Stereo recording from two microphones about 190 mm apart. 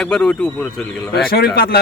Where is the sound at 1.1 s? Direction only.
55° left (ahead or behind).